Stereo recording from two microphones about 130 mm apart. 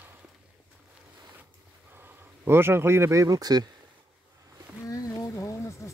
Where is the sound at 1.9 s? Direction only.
15° right (ahead or behind).